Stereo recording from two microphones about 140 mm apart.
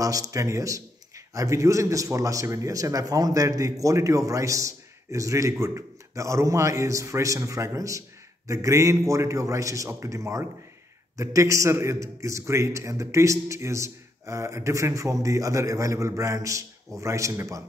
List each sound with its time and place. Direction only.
0.0 s a man's voice: 25° right (ahead or behind)